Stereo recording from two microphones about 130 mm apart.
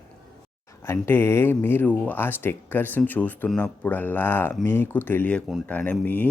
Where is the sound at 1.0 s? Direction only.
20° left (ahead or behind).